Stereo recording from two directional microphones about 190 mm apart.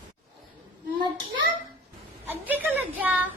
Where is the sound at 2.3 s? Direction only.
10° right (ahead or behind).